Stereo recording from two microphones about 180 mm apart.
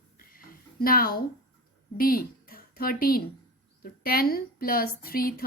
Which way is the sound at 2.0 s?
55° left (ahead or behind).